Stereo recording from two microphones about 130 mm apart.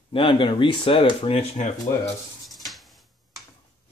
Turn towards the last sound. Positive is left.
turn(degrees=0)  # may be behind; listen again after turning